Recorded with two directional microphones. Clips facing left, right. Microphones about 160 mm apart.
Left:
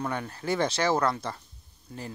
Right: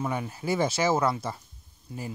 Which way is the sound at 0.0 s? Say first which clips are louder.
Right 1 dB; 5° right (ahead or behind).